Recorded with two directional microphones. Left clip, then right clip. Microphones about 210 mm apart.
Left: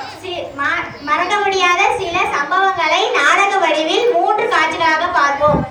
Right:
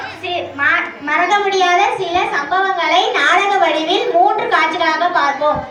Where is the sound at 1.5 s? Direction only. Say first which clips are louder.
Even; 50° left (ahead or behind).